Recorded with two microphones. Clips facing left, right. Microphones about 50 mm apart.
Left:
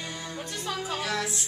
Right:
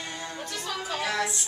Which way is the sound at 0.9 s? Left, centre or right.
Centre.